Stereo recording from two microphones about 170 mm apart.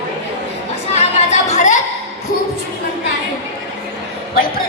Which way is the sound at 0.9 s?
40° left (ahead or behind).